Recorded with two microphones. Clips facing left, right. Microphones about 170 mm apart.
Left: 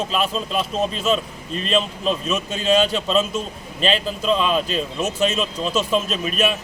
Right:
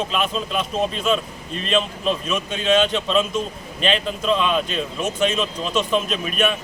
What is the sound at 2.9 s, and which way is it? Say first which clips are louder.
Speech: even; 5° left (ahead or behind).